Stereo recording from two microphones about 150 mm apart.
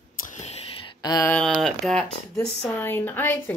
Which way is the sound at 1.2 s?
10° left (ahead or behind).